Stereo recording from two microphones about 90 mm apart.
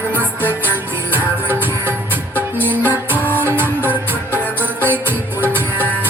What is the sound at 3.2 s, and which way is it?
Music, 25° left (ahead or behind).